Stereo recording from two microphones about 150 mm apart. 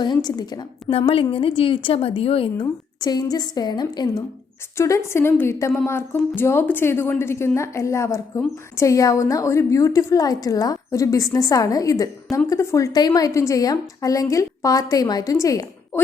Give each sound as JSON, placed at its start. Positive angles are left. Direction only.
{"t": 0.0, "sound": "a woman's voice", "side_deg": 30}
{"t": 0.9, "sound": "a woman's voice", "side_deg": 40}
{"t": 3.0, "sound": "a woman's voice", "side_deg": 25}
{"t": 4.8, "sound": "a woman's voice", "side_deg": 20}